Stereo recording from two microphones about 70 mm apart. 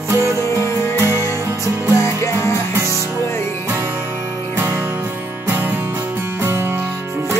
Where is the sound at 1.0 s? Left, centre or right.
Right.